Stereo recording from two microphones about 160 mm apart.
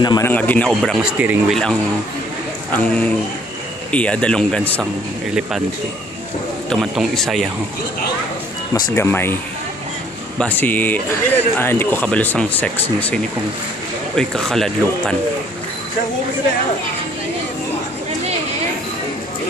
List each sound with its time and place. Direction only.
0.0 s a man's voice: 25° left (ahead or behind)
0.3 s speech: 10° left (ahead or behind)
1.1 s speech: 10° right (ahead or behind)
1.5 s speech: 5° left (ahead or behind)
6.7 s speech: centre (ahead or behind)
8.9 s speech: 15° left (ahead or behind)
10.4 s speech: 10° left (ahead or behind)
14.1 s speech: centre (ahead or behind)